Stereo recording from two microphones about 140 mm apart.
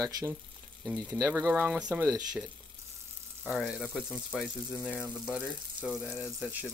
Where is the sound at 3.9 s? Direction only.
5° left (ahead or behind).